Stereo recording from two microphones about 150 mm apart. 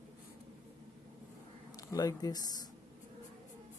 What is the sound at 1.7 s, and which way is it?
Speech, 25° left (ahead or behind).